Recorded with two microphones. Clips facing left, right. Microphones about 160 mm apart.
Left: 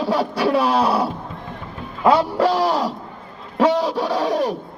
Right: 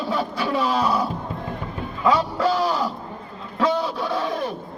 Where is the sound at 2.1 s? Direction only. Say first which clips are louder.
Left 4 dB; 70° left (ahead or behind).